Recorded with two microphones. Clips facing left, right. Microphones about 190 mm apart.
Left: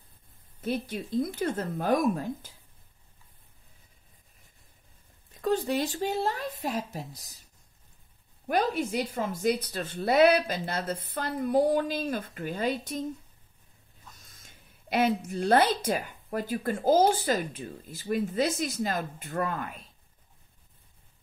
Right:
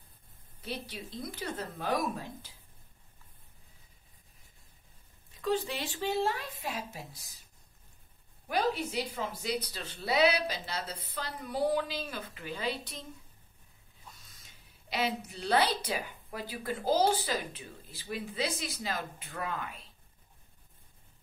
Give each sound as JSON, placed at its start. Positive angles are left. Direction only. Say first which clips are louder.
{"t": 0.6, "sound": "speech", "louder": "left 9 dB", "side_deg": 50}
{"t": 5.4, "sound": "a woman's voice", "louder": "left 5 dB", "side_deg": 45}
{"t": 8.5, "sound": "speech", "louder": "left 4 dB", "side_deg": 50}
{"t": 14.1, "sound": "speech", "louder": "left 3 dB", "side_deg": 50}